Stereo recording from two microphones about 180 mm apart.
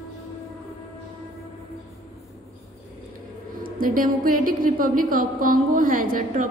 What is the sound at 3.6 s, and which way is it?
A woman's voice, 50° right (ahead or behind).